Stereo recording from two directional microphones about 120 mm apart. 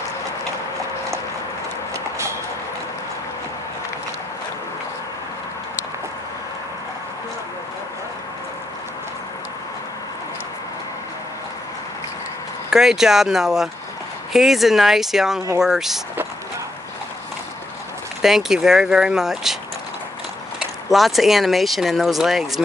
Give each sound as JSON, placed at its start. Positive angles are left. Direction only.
{"t": 12.7, "sound": "speech", "side_deg": -5}
{"t": 18.2, "sound": "speech", "side_deg": -5}
{"t": 20.5, "sound": "speech", "side_deg": 0}